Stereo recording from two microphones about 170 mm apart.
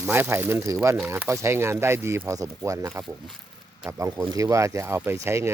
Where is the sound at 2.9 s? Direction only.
Centre (ahead or behind).